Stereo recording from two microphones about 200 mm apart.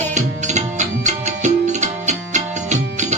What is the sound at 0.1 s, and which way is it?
Music, 35° right (ahead or behind).